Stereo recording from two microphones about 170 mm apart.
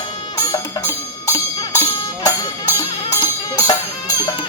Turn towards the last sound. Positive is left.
turn(degrees=20)  # may be behind; listen again after turning